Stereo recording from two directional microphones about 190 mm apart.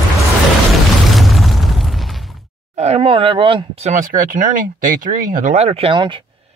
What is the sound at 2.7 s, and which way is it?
Speech, 35° right (ahead or behind).